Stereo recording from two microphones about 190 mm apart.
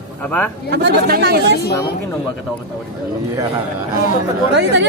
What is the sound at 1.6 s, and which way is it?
Speech, 60° left (ahead or behind).